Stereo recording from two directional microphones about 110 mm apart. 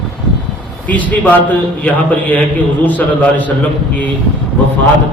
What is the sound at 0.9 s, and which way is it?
A man's voice, 15° left (ahead or behind).